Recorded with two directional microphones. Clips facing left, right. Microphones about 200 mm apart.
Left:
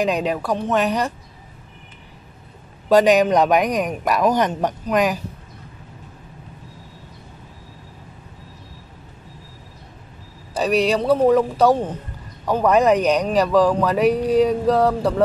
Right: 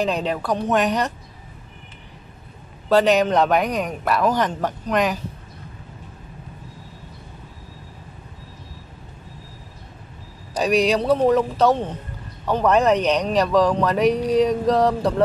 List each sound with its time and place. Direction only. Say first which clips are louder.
0.0 s speech: left 2 dB; 10° left (ahead or behind)
2.9 s speech: left 2 dB; 10° left (ahead or behind)
4.8 s speech: left 2 dB; 10° left (ahead or behind)
10.5 s a man's voice: even; 5° left (ahead or behind)